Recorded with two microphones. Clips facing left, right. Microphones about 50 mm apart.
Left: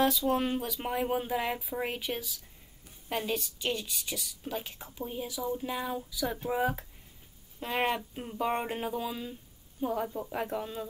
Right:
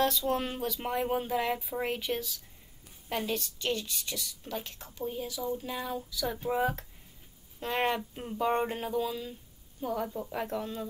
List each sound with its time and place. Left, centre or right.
0.0 s a woman's voice: centre
8.9 s a woman's voice: centre
10.0 s a woman's voice: centre